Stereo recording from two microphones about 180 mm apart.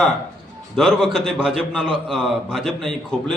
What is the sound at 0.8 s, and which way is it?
A man's voice, centre (ahead or behind).